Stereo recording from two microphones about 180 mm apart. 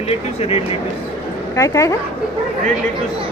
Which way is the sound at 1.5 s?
15° left (ahead or behind).